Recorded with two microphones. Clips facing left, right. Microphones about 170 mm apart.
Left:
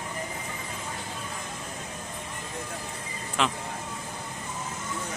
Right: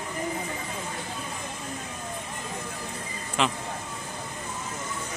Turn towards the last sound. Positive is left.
turn(degrees=0)  # may be behind; listen again after turning